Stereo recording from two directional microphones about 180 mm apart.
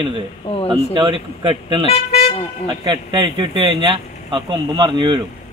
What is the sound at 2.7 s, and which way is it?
Speech, 25° right (ahead or behind).